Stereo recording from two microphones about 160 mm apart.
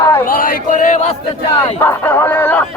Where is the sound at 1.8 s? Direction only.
15° left (ahead or behind).